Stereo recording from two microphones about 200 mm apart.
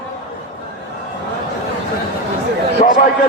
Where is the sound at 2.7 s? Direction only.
40° left (ahead or behind).